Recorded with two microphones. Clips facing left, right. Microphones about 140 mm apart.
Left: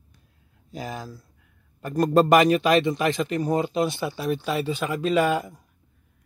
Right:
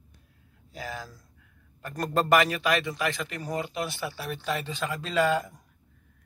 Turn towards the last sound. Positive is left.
turn(degrees=15)  # may be behind; listen again after turning